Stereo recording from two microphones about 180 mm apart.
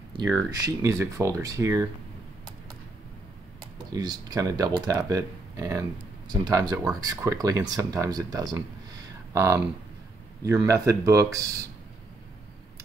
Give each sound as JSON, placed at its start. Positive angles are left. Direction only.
{"t": 0.7, "sound": "speech", "side_deg": -15}
{"t": 3.7, "sound": "speech", "side_deg": -25}